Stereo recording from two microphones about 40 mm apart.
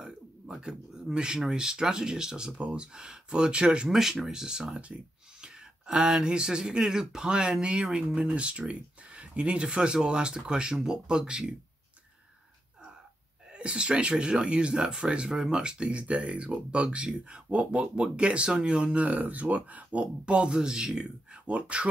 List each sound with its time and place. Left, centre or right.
0.6 s speech: centre
3.9 s speech: centre
13.5 s speech: right
20.2 s speech: right